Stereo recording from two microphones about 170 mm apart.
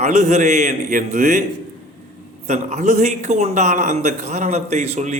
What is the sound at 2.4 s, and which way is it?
A man's voice, 45° right (ahead or behind).